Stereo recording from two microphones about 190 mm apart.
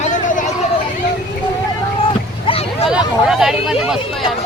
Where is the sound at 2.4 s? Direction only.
30° left (ahead or behind).